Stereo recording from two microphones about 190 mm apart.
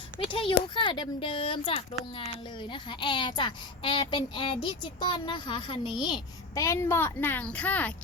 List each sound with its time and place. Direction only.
0.2 s a child's voice: 30° left (ahead or behind); by 7.9 s 10° left (ahead or behind)